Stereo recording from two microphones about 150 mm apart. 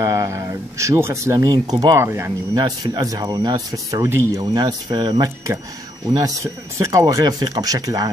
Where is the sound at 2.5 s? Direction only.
30° right (ahead or behind).